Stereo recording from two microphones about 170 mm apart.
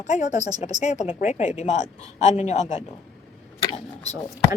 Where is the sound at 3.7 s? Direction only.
40° left (ahead or behind).